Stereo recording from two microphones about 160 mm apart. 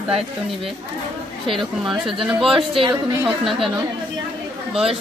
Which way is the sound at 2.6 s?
30° right (ahead or behind).